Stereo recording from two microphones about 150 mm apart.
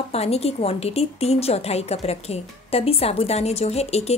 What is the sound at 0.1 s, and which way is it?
A woman's voice, 45° left (ahead or behind).